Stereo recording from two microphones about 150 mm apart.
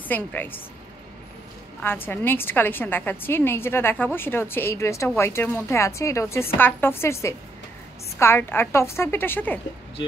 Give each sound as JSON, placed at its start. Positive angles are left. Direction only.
{"t": 0.1, "sound": "a woman's voice", "side_deg": 10}
{"t": 1.8, "sound": "a woman's voice", "side_deg": 15}